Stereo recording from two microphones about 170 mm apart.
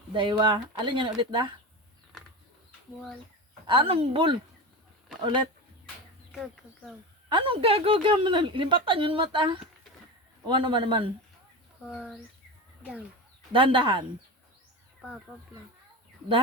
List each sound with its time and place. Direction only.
0.1 s speech: 30° right (ahead or behind)
3.7 s speech: 30° right (ahead or behind)
6.3 s speech: centre (ahead or behind)
7.3 s speech: 30° right (ahead or behind)
11.9 s speech: 5° right (ahead or behind)
13.5 s speech: 30° right (ahead or behind)